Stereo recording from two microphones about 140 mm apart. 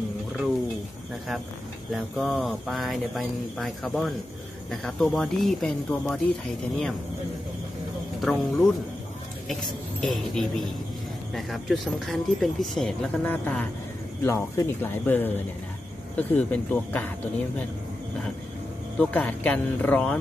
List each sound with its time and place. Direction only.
2.1 s speech: centre (ahead or behind)
8.2 s speech: 5° left (ahead or behind)
10.0 s speech: centre (ahead or behind)
18.9 s speech: 10° left (ahead or behind)